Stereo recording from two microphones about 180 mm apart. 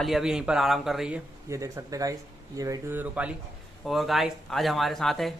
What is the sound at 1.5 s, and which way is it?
Speech, 15° right (ahead or behind).